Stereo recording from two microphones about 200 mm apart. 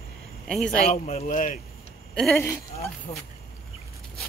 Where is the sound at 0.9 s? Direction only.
35° left (ahead or behind).